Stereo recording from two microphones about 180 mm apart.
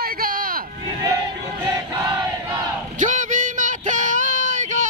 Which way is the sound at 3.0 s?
45° right (ahead or behind).